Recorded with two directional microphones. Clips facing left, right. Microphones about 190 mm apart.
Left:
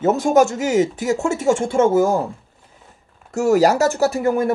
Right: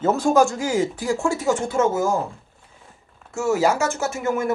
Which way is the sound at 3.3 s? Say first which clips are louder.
Left 5 dB; 40° left (ahead or behind).